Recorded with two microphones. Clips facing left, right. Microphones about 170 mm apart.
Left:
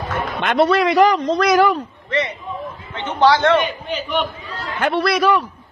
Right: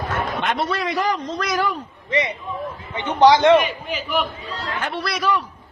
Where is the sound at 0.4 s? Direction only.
75° left (ahead or behind).